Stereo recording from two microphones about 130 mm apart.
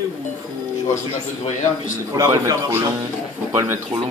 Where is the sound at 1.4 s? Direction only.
70° left (ahead or behind).